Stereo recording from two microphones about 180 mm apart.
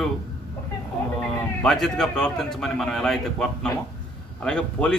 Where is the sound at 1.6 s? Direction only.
5° left (ahead or behind).